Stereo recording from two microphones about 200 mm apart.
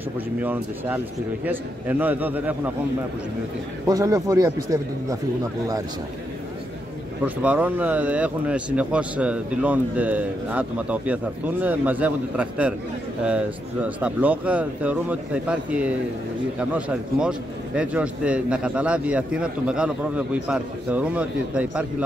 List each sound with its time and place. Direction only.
0.4 s speech: 10° right (ahead or behind)
3.8 s speech: 15° right (ahead or behind)
7.2 s a man's voice: 10° right (ahead or behind)